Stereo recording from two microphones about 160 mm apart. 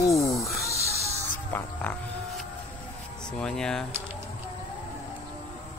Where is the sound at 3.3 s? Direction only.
5° left (ahead or behind).